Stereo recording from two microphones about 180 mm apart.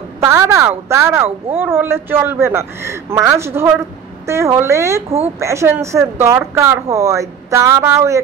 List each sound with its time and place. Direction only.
0.2 s a woman's voice: 15° right (ahead or behind)